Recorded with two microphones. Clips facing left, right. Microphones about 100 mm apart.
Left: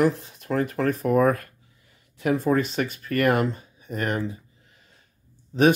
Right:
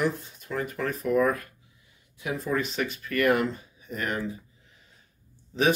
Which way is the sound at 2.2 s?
55° left (ahead or behind).